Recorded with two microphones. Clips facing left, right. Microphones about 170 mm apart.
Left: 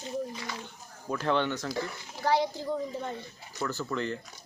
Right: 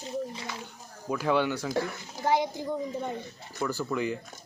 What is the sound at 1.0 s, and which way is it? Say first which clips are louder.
Speech: right 2 dB; 10° right (ahead or behind).